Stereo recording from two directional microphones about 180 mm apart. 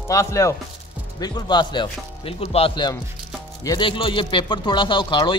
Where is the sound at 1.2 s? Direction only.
25° left (ahead or behind).